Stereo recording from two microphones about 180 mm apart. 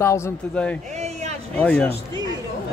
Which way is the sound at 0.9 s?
40° right (ahead or behind).